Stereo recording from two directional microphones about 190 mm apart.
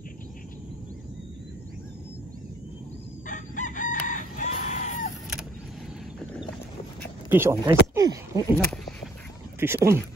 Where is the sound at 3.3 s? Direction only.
45° left (ahead or behind).